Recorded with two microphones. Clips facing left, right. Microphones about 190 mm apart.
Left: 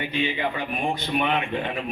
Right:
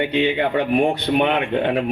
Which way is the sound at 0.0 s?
70° right (ahead or behind).